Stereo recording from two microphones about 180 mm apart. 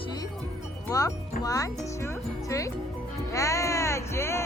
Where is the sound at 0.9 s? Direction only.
20° left (ahead or behind).